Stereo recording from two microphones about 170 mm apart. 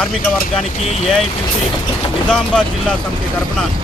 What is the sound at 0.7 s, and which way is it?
Speech, 40° left (ahead or behind).